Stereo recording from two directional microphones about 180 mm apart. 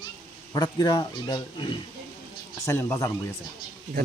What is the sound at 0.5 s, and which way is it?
A man's voice, 25° left (ahead or behind).